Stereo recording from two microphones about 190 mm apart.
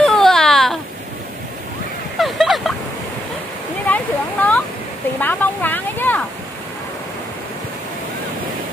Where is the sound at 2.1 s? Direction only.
Centre (ahead or behind).